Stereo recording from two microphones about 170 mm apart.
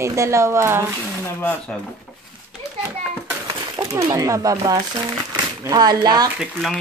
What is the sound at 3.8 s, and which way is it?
Speech, 20° right (ahead or behind).